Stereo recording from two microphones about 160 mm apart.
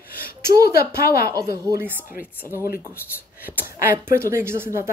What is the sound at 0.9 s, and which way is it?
Speech, 70° left (ahead or behind).